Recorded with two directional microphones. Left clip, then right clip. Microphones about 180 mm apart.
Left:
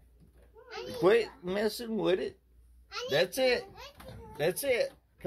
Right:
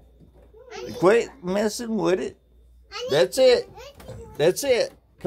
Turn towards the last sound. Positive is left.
turn(degrees=-30)  # may be behind; listen again after turning